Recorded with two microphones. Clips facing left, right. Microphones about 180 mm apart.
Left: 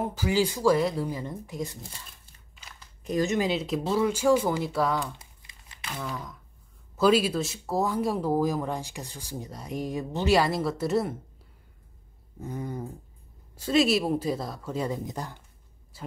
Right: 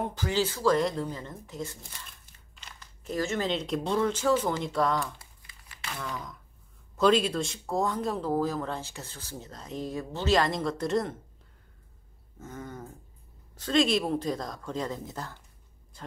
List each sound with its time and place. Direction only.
0.0 s speech: 10° left (ahead or behind)
1.8 s speech: 30° left (ahead or behind)
3.0 s speech: 15° left (ahead or behind)
5.0 s crumpling: 20° left (ahead or behind)
5.9 s speech: 5° left (ahead or behind)
12.4 s speech: 15° left (ahead or behind)